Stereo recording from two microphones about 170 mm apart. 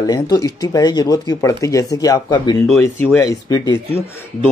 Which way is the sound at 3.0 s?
15° left (ahead or behind).